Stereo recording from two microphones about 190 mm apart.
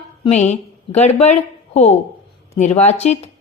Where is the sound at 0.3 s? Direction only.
35° left (ahead or behind).